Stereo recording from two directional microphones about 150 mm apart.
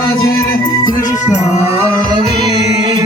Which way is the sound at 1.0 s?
55° left (ahead or behind).